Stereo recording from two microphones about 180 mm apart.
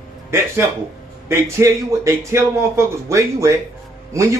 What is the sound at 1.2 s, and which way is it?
A man's voice, 15° right (ahead or behind).